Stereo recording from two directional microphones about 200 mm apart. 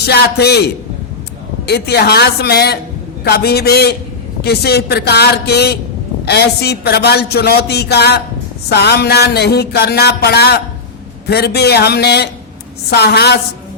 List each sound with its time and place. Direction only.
0.0 s a man's voice: 55° left (ahead or behind)